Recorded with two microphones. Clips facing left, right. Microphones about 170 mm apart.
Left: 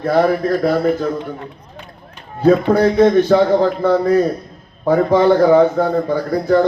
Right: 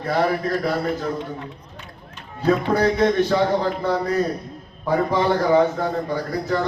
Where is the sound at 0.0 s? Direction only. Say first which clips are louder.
Left 6 dB; 45° left (ahead or behind).